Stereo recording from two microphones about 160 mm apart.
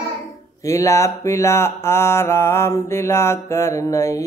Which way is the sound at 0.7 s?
20° left (ahead or behind).